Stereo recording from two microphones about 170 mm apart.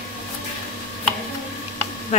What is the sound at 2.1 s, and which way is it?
Speech, 40° left (ahead or behind).